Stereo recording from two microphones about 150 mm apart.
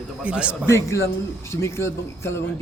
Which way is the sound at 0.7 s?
20° left (ahead or behind).